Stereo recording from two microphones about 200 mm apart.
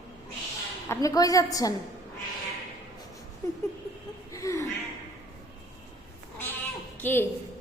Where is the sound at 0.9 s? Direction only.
15° left (ahead or behind).